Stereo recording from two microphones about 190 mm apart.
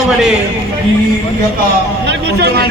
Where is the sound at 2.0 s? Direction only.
60° right (ahead or behind).